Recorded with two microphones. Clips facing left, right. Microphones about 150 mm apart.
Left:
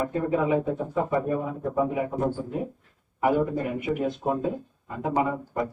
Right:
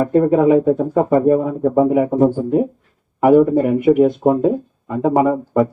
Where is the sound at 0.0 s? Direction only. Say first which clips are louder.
Right 12 dB; 60° right (ahead or behind).